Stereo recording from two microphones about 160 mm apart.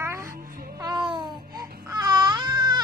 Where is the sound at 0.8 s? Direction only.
25° right (ahead or behind).